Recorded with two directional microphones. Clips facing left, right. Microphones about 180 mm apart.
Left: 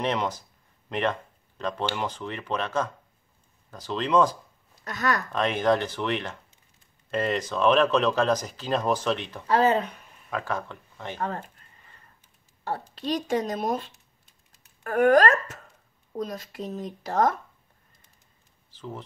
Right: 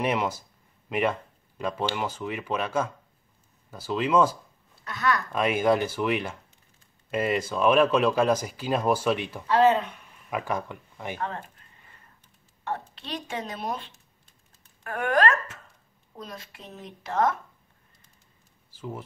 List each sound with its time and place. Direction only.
0.0 s speech: 10° right (ahead or behind)
4.8 s speech: 40° left (ahead or behind)
5.3 s speech: 10° right (ahead or behind)
9.5 s speech: 40° left (ahead or behind)
10.3 s speech: 15° right (ahead or behind)
11.1 s speech: 40° left (ahead or behind)
12.6 s speech: 35° left (ahead or behind)
18.7 s speech: 10° right (ahead or behind)